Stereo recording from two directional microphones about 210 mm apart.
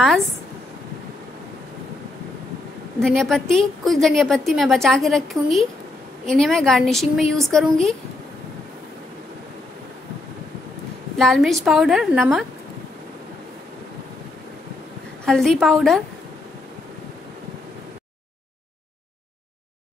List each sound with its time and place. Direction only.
3.0 s a woman's voice: centre (ahead or behind)
11.1 s a woman's voice: centre (ahead or behind)
15.2 s a woman's voice: centre (ahead or behind)